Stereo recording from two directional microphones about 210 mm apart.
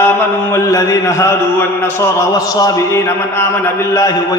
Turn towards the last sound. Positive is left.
turn(degrees=15)  # may be behind; listen again after turning